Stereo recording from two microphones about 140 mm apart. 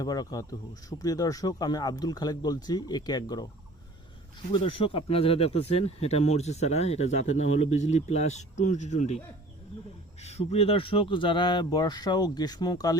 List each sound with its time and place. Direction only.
0.0 s speech: 25° left (ahead or behind)
4.5 s speech: 40° left (ahead or behind)